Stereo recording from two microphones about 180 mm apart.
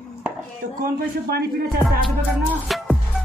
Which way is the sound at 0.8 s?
60° right (ahead or behind).